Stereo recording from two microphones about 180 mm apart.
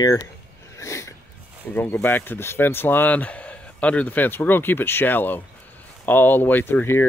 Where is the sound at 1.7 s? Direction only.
10° left (ahead or behind).